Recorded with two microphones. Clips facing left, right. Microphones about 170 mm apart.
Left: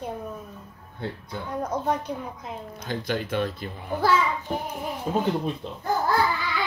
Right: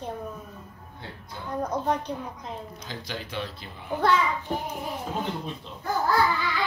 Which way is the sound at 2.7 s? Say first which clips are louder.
Left 8 dB; 55° left (ahead or behind).